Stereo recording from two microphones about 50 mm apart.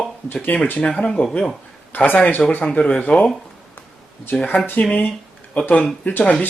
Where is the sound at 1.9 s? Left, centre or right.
Left.